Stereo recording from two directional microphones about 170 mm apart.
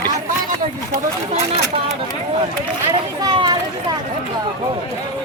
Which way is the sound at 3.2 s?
25° right (ahead or behind).